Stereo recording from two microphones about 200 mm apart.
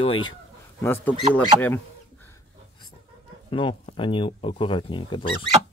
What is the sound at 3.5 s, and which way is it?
Speech, 25° left (ahead or behind).